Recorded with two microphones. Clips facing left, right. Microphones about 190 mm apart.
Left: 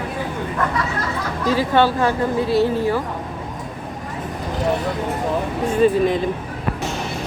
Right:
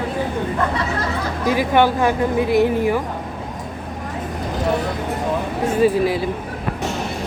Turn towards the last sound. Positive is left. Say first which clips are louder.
# left 1 dB
turn(degrees=-5)  # may be behind; listen again after turning